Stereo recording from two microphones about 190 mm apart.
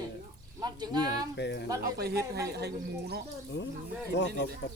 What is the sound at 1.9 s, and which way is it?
Speech, 55° right (ahead or behind).